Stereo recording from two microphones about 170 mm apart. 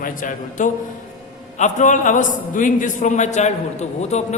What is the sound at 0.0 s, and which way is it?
A man's voice, 50° left (ahead or behind).